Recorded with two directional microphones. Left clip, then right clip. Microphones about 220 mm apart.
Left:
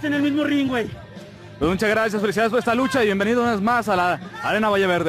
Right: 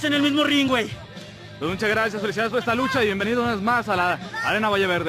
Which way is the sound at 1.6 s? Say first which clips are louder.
Left 3 dB; 35° left (ahead or behind).